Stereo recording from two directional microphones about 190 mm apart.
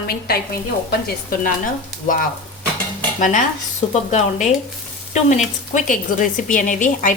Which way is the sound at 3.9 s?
35° left (ahead or behind).